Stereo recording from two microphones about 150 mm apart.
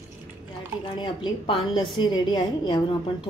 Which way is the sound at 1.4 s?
35° left (ahead or behind).